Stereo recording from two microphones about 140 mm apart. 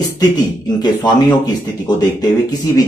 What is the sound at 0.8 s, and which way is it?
A man's voice, 30° left (ahead or behind).